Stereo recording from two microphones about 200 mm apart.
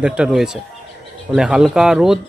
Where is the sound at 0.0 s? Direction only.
5° right (ahead or behind).